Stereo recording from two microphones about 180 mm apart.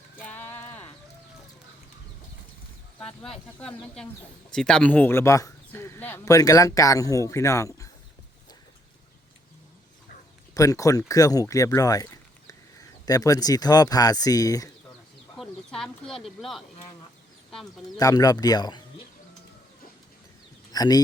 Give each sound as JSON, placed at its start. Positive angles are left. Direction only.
{"t": 0.2, "sound": "sheep", "side_deg": 10}
{"t": 3.0, "sound": "speech", "side_deg": 5}
{"t": 10.5, "sound": "speech", "side_deg": 20}
{"t": 15.4, "sound": "speech", "side_deg": 0}
{"t": 17.9, "sound": "speech", "side_deg": 20}
{"t": 20.7, "sound": "speech", "side_deg": 20}